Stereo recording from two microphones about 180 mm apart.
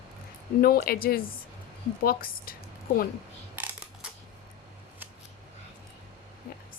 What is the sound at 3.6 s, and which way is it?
Coin, 10° right (ahead or behind).